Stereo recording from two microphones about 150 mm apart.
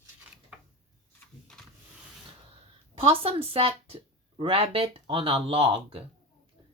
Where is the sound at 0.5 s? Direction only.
5° right (ahead or behind).